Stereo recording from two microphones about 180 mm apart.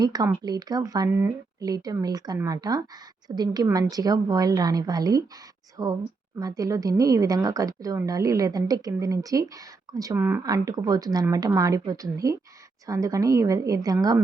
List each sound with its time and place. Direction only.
0.0 s a woman's voice: 20° right (ahead or behind)